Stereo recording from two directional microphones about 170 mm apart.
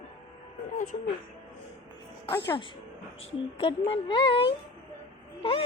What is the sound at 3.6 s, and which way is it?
Speech, 30° left (ahead or behind).